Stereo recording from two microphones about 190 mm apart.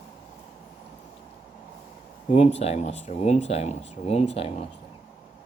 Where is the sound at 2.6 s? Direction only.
35° left (ahead or behind).